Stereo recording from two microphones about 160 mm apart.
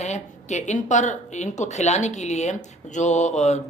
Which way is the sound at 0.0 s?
45° left (ahead or behind).